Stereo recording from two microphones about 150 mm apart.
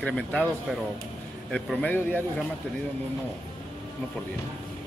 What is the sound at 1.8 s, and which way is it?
Speech, 10° left (ahead or behind).